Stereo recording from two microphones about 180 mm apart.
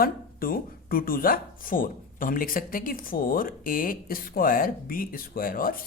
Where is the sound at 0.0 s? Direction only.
55° left (ahead or behind).